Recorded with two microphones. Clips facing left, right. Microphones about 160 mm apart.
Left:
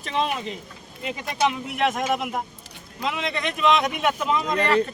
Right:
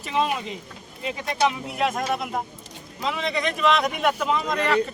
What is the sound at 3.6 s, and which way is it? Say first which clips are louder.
Speech: left 1 dB; centre (ahead or behind).